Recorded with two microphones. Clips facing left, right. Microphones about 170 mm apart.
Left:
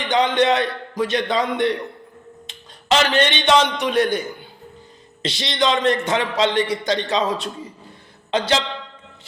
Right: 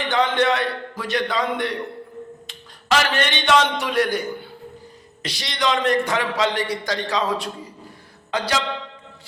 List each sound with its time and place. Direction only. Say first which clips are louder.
0.1 s a man's voice: left 3 dB; 20° left (ahead or behind)
5.2 s a man's voice: left 3 dB; 25° left (ahead or behind)